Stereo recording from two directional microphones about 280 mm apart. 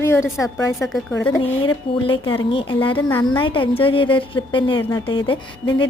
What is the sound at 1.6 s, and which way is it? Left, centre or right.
A woman's voice, centre.